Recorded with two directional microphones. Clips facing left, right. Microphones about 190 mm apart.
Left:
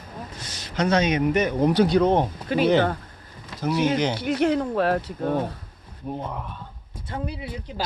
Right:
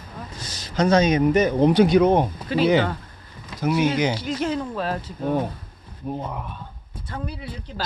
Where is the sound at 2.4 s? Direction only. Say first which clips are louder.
Left 1 dB; 50° left (ahead or behind).